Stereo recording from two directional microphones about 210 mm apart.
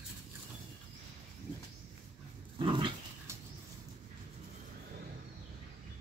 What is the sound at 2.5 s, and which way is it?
Dog, 20° right (ahead or behind).